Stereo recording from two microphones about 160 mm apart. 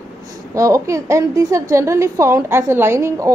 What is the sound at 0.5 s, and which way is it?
A woman's voice, 20° right (ahead or behind).